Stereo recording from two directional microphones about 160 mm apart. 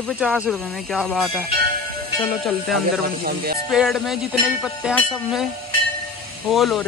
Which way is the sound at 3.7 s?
Centre (ahead or behind).